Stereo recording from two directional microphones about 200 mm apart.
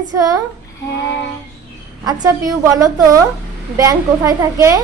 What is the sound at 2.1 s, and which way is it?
A woman's voice, 20° right (ahead or behind).